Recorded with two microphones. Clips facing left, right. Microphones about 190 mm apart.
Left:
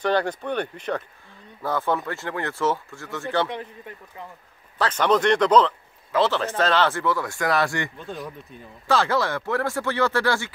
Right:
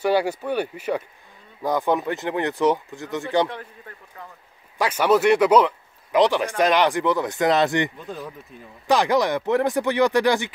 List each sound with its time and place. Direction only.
0.0 s speech: 10° right (ahead or behind)
3.4 s speech: 20° left (ahead or behind)
4.7 s speech: 10° right (ahead or behind)